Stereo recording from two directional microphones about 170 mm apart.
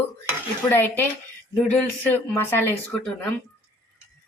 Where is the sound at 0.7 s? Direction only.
10° left (ahead or behind).